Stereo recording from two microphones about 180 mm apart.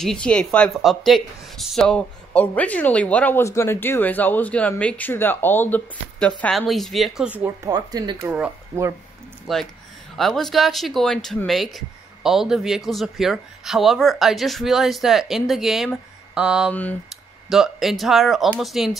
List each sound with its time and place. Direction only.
0.0 s speech: 5° left (ahead or behind)
7.7 s speech: 20° right (ahead or behind)
9.5 s speech: centre (ahead or behind)